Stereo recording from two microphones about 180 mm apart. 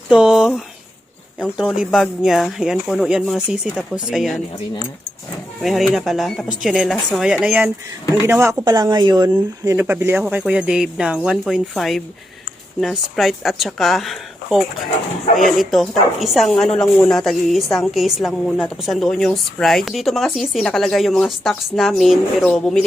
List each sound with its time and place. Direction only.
0.1 s speech: 5° right (ahead or behind)
5.6 s speech: centre (ahead or behind); by 9.7 s 25° right (ahead or behind)
9.7 s speech: 10° right (ahead or behind)